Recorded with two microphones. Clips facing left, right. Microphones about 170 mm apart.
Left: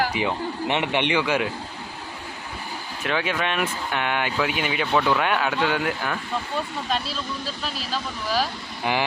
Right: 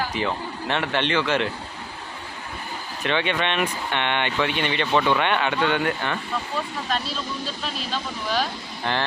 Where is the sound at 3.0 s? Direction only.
5° left (ahead or behind).